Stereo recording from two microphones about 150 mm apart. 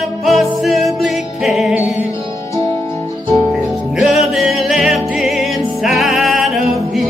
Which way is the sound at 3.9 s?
Centre (ahead or behind).